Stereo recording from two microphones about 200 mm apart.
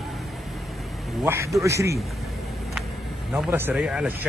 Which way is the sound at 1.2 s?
15° right (ahead or behind).